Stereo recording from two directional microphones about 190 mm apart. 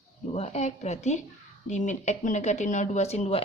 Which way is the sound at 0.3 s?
35° left (ahead or behind).